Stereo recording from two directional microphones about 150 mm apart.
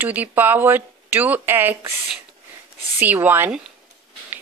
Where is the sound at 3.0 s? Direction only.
10° right (ahead or behind).